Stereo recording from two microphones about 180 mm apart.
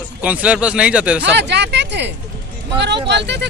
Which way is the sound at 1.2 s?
75° right (ahead or behind).